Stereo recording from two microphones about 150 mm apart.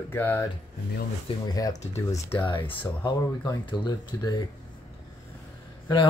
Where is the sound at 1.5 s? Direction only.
25° left (ahead or behind).